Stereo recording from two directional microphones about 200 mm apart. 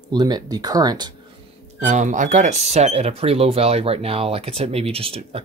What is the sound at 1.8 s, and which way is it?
Speech, 35° right (ahead or behind).